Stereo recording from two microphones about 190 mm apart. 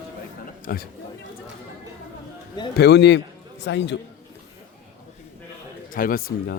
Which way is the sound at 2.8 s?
65° left (ahead or behind).